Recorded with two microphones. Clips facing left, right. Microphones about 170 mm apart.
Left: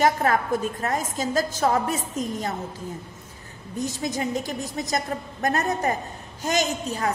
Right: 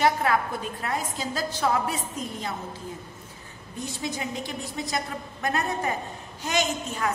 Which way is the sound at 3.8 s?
40° left (ahead or behind).